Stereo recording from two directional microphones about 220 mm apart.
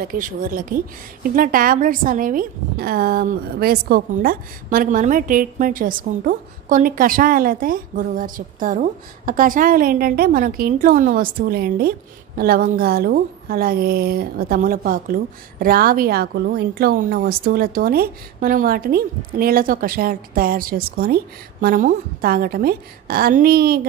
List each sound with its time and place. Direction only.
0.0 s a woman's voice: 40° right (ahead or behind)